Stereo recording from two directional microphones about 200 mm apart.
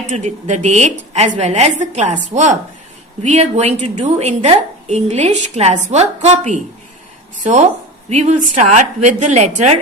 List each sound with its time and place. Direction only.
0.1 s a woman's voice: 35° right (ahead or behind)